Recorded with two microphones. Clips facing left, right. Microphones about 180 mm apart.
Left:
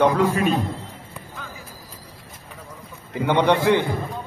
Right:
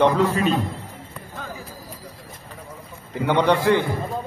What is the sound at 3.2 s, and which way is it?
Speech, 20° left (ahead or behind).